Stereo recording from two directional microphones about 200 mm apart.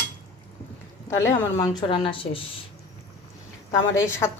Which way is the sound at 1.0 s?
15° left (ahead or behind).